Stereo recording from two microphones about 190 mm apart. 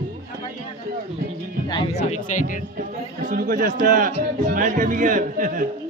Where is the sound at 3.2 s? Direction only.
50° right (ahead or behind).